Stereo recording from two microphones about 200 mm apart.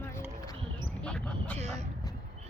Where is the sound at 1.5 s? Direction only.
35° right (ahead or behind).